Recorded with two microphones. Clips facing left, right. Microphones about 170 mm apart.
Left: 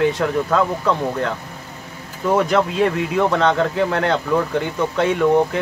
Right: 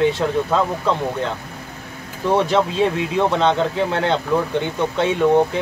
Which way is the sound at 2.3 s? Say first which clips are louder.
Even; 25° right (ahead or behind).